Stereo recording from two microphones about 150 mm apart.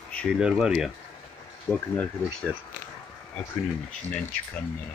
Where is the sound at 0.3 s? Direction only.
5° right (ahead or behind).